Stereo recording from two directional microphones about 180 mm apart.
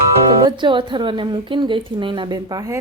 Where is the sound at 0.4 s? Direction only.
25° right (ahead or behind).